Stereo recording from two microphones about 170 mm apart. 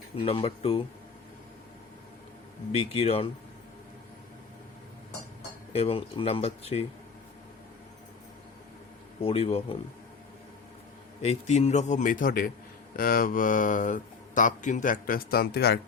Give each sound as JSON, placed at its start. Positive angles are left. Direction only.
{"t": 0.2, "sound": "speech", "side_deg": 35}
{"t": 2.7, "sound": "speech", "side_deg": 35}
{"t": 5.7, "sound": "speech", "side_deg": 35}
{"t": 9.2, "sound": "speech", "side_deg": 35}
{"t": 11.2, "sound": "speech", "side_deg": 40}